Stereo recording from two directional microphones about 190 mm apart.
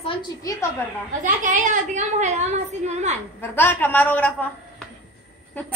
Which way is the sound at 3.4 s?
10° left (ahead or behind).